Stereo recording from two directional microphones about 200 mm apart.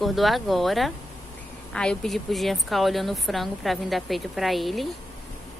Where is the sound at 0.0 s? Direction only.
Centre (ahead or behind).